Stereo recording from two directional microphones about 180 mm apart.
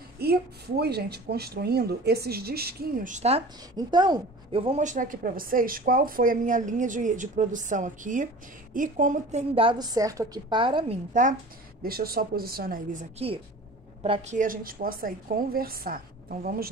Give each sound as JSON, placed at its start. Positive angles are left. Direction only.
{"t": 0.2, "sound": "speech", "side_deg": -60}
{"t": 3.7, "sound": "a woman's voice", "side_deg": -25}
{"t": 11.8, "sound": "speech", "side_deg": -55}
{"t": 14.0, "sound": "a woman's voice", "side_deg": -35}